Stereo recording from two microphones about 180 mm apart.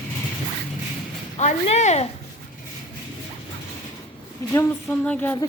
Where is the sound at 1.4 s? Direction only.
40° left (ahead or behind).